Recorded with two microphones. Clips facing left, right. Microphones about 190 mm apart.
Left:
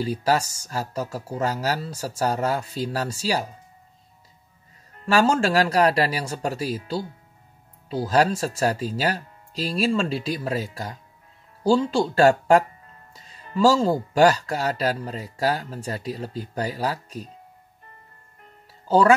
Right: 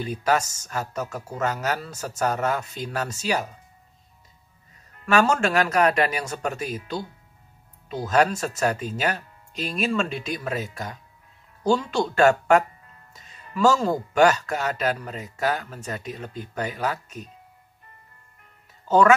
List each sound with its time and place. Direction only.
0.0 s speech: 35° left (ahead or behind)
4.9 s speech: 30° left (ahead or behind)
18.9 s speech: 30° left (ahead or behind)